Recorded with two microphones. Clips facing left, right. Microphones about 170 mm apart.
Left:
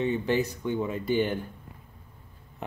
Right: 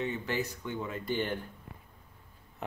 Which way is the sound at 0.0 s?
20° left (ahead or behind).